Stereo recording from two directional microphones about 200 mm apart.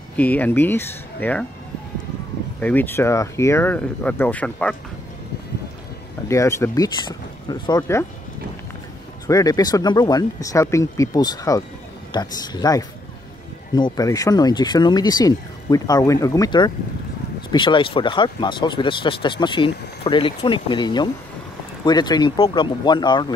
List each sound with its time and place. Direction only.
0.1 s speech: 10° left (ahead or behind)
2.6 s speech: 10° left (ahead or behind)
6.2 s speech: 15° left (ahead or behind)
9.3 s speech: 20° left (ahead or behind)